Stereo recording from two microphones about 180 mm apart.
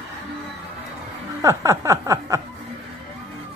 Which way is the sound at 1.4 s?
20° right (ahead or behind).